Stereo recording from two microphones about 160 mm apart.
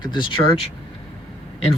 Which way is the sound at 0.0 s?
30° left (ahead or behind).